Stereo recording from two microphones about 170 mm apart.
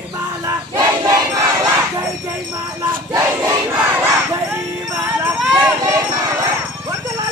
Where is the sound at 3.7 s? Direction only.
10° right (ahead or behind).